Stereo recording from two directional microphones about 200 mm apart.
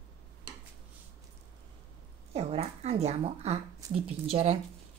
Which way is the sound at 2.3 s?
30° right (ahead or behind).